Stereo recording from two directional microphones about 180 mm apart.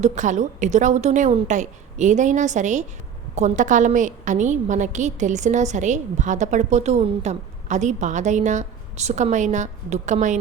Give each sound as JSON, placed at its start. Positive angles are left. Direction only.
{"t": 0.0, "sound": "a woman's voice", "side_deg": -40}